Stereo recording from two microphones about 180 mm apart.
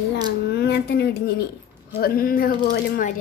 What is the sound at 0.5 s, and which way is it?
Speech, 65° left (ahead or behind).